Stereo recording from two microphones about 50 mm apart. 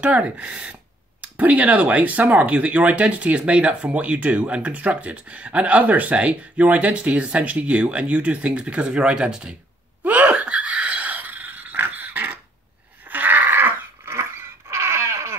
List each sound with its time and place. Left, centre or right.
0.0 s speech: right
10.0 s a sound: right
14.7 s dog: right